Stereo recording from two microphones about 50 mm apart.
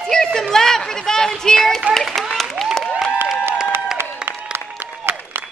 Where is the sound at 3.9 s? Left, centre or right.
Right.